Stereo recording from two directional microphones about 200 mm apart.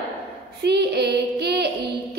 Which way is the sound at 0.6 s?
55° right (ahead or behind).